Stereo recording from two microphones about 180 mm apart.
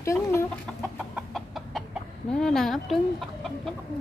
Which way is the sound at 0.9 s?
5° right (ahead or behind).